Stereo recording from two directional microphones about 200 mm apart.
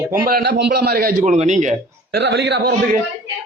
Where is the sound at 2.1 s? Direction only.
60° right (ahead or behind).